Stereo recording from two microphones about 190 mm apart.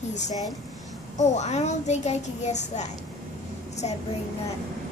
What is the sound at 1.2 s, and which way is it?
Speech, 35° left (ahead or behind).